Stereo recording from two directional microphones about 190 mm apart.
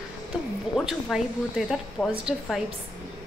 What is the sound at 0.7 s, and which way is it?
A woman's voice, centre (ahead or behind).